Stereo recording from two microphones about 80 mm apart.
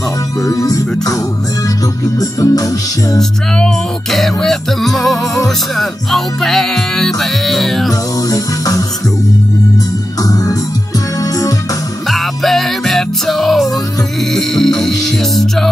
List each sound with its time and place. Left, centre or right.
0.5 s music: left
2.1 s music: left
3.2 s music: centre
8.3 s music: left
12.1 s music: centre